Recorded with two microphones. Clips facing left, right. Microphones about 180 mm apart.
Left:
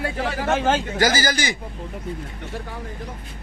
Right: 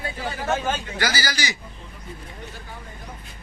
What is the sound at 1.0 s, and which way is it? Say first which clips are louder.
Speech: left 6 dB; 45° left (ahead or behind).